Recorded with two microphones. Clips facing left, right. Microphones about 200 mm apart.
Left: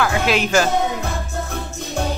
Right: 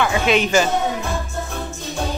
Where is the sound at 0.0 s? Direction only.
Centre (ahead or behind).